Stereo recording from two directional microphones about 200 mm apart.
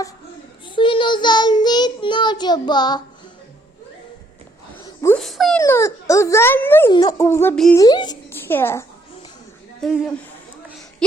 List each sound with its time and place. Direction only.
0.8 s child singing: 25° left (ahead or behind)
5.0 s speech: 5° left (ahead or behind)
5.5 s speech: 15° left (ahead or behind)
7.8 s speech: 20° left (ahead or behind)
9.8 s speech: centre (ahead or behind)